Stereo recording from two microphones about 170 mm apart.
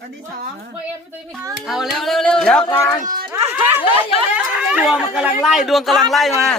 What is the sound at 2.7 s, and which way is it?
Speech, 20° left (ahead or behind).